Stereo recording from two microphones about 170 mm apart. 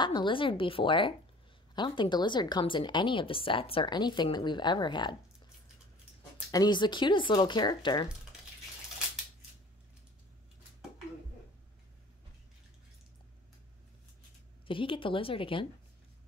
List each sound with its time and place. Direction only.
0.0 s speech: 25° left (ahead or behind)
6.5 s speech: 25° left (ahead or behind)
14.7 s speech: 30° left (ahead or behind)